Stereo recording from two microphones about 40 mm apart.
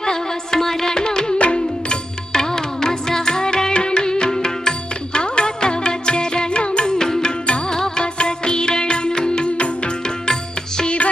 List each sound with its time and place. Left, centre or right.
0.0 s music: centre
10.8 s music: left